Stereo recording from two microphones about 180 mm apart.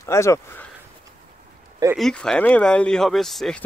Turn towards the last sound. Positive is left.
turn(degrees=0)  # may be behind; listen again after turning